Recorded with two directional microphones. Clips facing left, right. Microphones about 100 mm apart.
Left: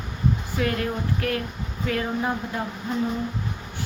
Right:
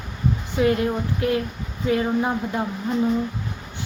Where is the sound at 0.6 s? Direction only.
20° right (ahead or behind).